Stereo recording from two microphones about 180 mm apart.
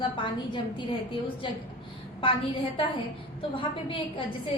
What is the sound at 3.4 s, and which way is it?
Speech, 30° left (ahead or behind).